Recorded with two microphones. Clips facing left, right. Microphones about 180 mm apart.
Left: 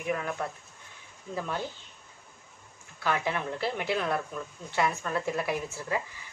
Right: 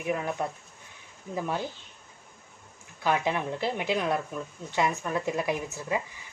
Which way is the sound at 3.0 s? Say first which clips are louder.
Right 3 dB; 15° right (ahead or behind).